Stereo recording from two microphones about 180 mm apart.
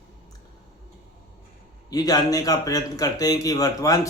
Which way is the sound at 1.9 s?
20° left (ahead or behind).